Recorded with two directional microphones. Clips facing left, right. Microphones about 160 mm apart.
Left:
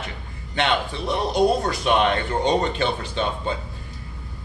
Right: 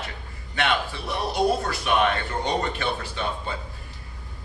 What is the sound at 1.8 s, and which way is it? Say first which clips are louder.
A man's voice: left 2 dB; 20° left (ahead or behind).